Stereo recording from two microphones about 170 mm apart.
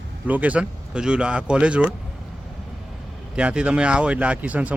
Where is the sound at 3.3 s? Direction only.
5° right (ahead or behind).